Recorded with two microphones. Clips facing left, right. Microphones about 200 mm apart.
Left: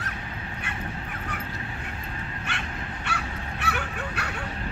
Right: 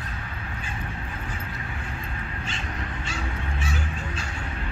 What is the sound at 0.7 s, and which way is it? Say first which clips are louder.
Honk: left 1 dB; 75° left (ahead or behind).